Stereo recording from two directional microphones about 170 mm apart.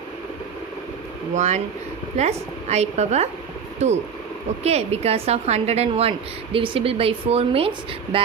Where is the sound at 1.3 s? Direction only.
45° right (ahead or behind).